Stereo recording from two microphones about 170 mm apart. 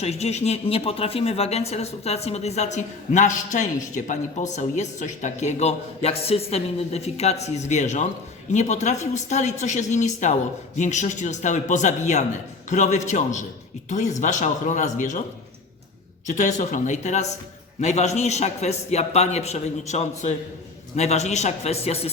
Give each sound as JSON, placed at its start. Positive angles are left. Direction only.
{"t": 0.0, "sound": "a man's voice", "side_deg": 40}
{"t": 16.2, "sound": "a man's voice", "side_deg": 45}